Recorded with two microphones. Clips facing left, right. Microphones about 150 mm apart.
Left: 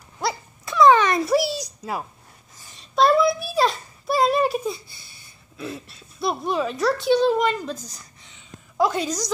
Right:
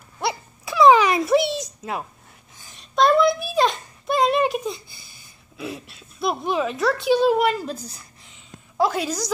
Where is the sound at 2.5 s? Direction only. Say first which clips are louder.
Even; centre (ahead or behind).